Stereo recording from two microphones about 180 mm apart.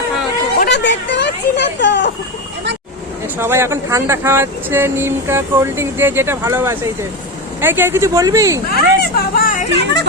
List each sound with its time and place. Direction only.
0.6 s a sound: 70° left (ahead or behind)
3.3 s speech: 15° right (ahead or behind)
8.7 s speech: 55° left (ahead or behind)